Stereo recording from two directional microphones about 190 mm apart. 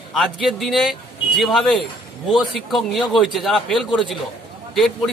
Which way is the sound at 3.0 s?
Centre (ahead or behind).